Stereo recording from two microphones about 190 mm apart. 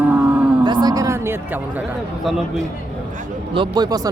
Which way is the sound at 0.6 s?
20° right (ahead or behind).